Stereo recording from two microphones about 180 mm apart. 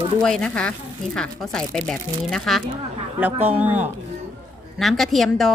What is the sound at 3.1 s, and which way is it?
Speech, 10° right (ahead or behind).